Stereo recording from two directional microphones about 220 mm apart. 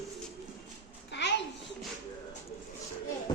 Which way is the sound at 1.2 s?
55° left (ahead or behind).